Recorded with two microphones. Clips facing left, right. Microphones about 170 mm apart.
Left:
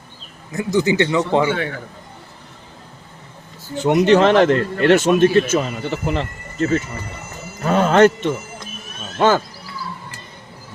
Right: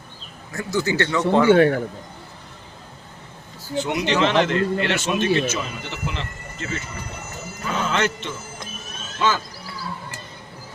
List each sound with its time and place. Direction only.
0.5 s speech: 15° left (ahead or behind)
1.5 s a man's voice: 50° right (ahead or behind)
3.8 s a man's voice: 50° left (ahead or behind)